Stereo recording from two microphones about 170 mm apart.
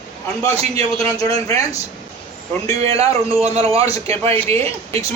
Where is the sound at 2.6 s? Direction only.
35° right (ahead or behind).